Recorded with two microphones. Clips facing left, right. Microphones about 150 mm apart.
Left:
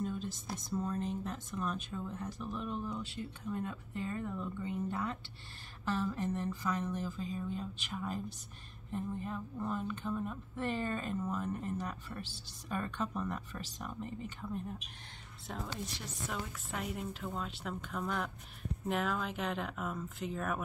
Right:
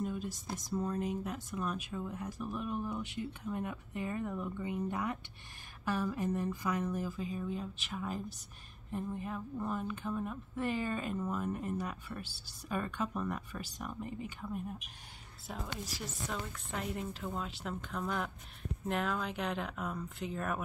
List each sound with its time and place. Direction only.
0.0 s a woman's voice: 10° right (ahead or behind)